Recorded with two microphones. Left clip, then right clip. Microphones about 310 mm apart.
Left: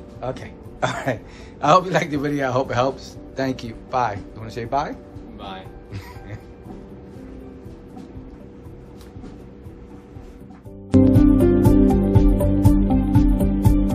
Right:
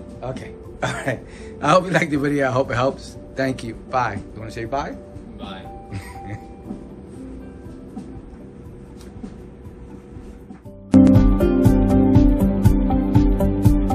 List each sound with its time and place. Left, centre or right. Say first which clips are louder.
0.2 s speech: left 2 dB; left
10.9 s music: even; centre